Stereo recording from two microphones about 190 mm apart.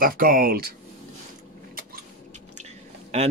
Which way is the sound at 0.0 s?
50° right (ahead or behind).